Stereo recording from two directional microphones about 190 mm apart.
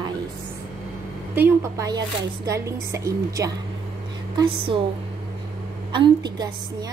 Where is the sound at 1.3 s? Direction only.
10° right (ahead or behind).